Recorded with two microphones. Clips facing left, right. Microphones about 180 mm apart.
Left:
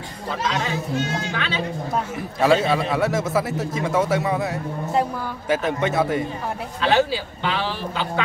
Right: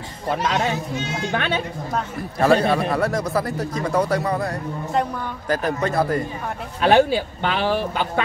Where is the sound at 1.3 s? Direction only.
55° right (ahead or behind).